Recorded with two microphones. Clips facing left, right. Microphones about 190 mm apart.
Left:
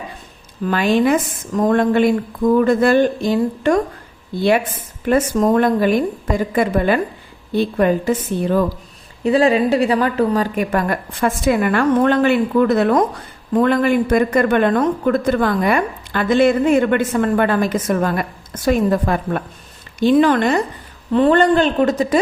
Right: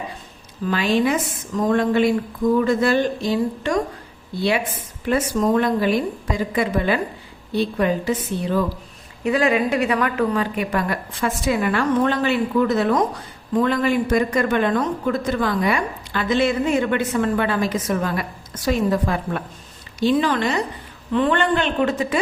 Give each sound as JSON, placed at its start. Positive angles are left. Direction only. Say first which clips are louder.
{"t": 0.7, "sound": "a woman's voice", "louder": "left 4 dB", "side_deg": 50}
{"t": 5.0, "sound": "a woman's voice", "louder": "left 4 dB", "side_deg": 50}
{"t": 9.2, "sound": "a woman's voice", "louder": "left 5 dB", "side_deg": 30}
{"t": 21.1, "sound": "a woman's voice", "louder": "left 6 dB", "side_deg": 35}